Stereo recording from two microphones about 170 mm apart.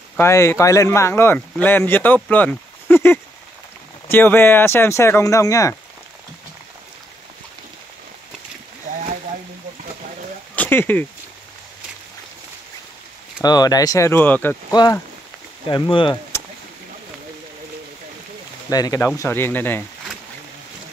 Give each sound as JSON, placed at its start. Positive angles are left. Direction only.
{"t": 0.2, "sound": "speech", "side_deg": 15}
{"t": 10.5, "sound": "a sound", "side_deg": 10}
{"t": 13.4, "sound": "speech", "side_deg": 20}
{"t": 14.7, "sound": "speech", "side_deg": 20}
{"t": 18.7, "sound": "speech", "side_deg": 20}